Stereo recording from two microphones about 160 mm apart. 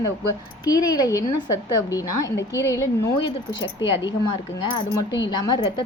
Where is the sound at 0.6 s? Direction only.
20° left (ahead or behind).